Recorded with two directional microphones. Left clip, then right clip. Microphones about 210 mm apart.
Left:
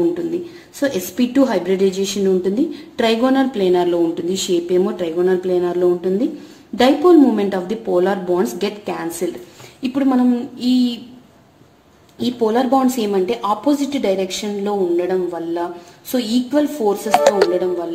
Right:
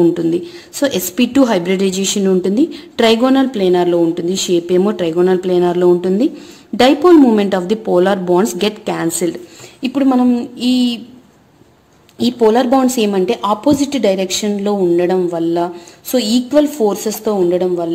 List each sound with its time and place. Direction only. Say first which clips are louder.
0.7 s speech: right 4 dB; 35° right (ahead or behind)
12.2 s speech: right 5 dB; 40° right (ahead or behind)